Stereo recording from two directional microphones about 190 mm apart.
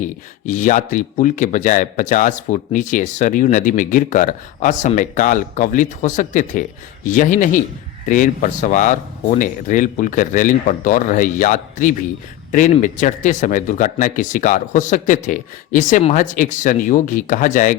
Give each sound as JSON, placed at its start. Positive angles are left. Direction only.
{"t": 0.4, "sound": "speech", "side_deg": 40}